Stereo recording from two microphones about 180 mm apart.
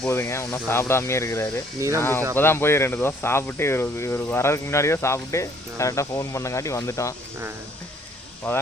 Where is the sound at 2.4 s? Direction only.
15° left (ahead or behind).